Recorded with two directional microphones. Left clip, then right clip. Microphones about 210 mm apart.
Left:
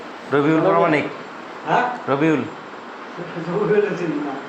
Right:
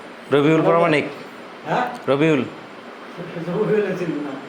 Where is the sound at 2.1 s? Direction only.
65° right (ahead or behind).